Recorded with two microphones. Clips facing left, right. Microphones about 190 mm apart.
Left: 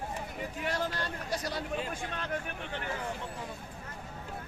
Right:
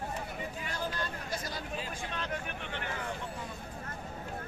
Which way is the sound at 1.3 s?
70° left (ahead or behind).